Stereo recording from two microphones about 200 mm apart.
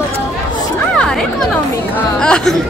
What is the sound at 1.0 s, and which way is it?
Speech, 5° left (ahead or behind).